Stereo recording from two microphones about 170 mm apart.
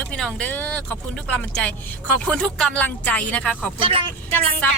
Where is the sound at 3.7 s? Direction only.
35° right (ahead or behind).